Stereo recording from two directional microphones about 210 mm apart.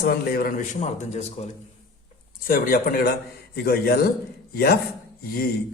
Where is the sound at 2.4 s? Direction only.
45° left (ahead or behind).